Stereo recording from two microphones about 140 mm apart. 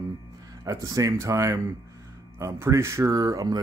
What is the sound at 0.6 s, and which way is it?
Speech, 25° right (ahead or behind).